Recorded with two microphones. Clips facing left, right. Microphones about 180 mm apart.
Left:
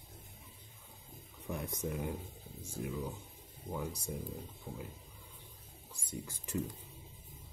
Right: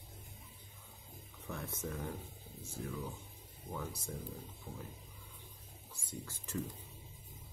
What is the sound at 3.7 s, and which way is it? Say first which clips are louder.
Speech: left 3 dB; 15° left (ahead or behind).